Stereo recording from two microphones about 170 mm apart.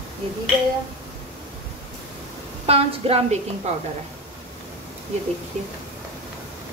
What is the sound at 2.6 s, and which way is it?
A woman's voice, 35° right (ahead or behind).